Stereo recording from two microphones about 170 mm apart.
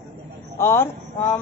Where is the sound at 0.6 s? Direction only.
15° left (ahead or behind).